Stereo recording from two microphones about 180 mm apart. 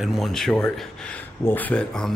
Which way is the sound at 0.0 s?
Centre (ahead or behind).